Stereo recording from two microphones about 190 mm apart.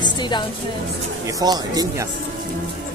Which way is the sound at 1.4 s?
20° right (ahead or behind).